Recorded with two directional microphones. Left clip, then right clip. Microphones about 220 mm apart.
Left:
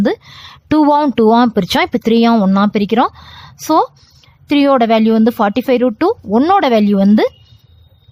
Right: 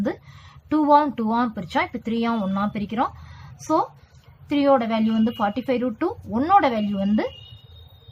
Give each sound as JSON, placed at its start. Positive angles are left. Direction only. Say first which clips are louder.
{"t": 0.0, "sound": "speech", "louder": "left 11 dB", "side_deg": 45}